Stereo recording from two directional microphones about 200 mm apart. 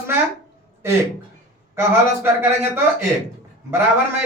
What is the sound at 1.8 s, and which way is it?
A man's voice, 10° right (ahead or behind).